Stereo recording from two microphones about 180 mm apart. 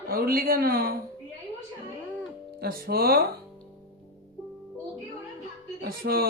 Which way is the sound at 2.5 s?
55° right (ahead or behind).